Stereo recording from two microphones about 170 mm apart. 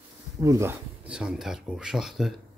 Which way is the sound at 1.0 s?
5° right (ahead or behind).